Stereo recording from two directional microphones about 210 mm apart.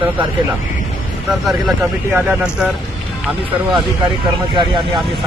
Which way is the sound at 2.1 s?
5° right (ahead or behind).